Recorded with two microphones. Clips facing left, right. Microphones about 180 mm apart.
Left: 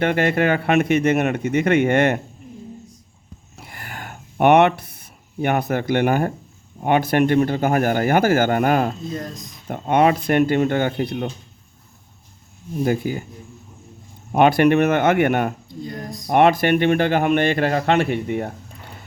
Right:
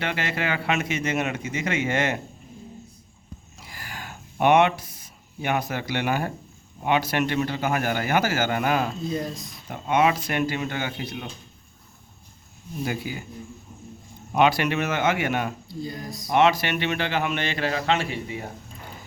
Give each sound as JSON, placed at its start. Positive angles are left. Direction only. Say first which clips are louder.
{"t": 0.0, "sound": "speech", "louder": "left 10 dB", "side_deg": 50}
{"t": 3.6, "sound": "a sound", "louder": "left 4 dB", "side_deg": 55}
{"t": 6.8, "sound": "a man's voice", "louder": "left 6 dB", "side_deg": 50}
{"t": 9.0, "sound": "speech", "louder": "right 1 dB", "side_deg": -5}
{"t": 9.6, "sound": "a man's voice", "louder": "left 5 dB", "side_deg": 55}
{"t": 12.8, "sound": "a man's voice", "louder": "left 9 dB", "side_deg": 45}
{"t": 14.3, "sound": "speech", "louder": "left 7 dB", "side_deg": 55}
{"t": 15.7, "sound": "speech", "louder": "left 1 dB", "side_deg": -5}
{"t": 16.2, "sound": "a man's voice", "louder": "left 5 dB", "side_deg": 55}